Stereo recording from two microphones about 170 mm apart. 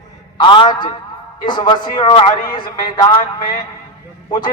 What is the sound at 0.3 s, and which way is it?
A man's voice, 30° left (ahead or behind).